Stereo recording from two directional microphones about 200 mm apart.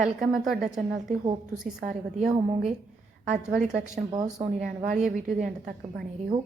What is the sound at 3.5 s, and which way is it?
A woman's voice, 5° right (ahead or behind).